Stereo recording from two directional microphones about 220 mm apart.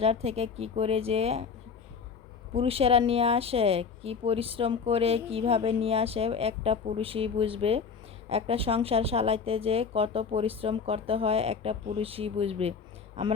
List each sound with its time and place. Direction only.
0.0 s speech: 25° right (ahead or behind)
2.5 s speech: 25° right (ahead or behind)